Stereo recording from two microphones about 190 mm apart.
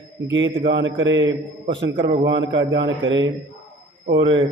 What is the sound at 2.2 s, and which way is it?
A man's voice, 70° right (ahead or behind).